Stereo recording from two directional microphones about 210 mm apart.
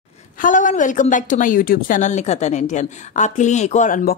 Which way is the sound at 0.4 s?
40° left (ahead or behind).